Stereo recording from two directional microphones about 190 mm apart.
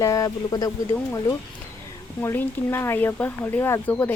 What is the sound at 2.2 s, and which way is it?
Speech, 10° left (ahead or behind).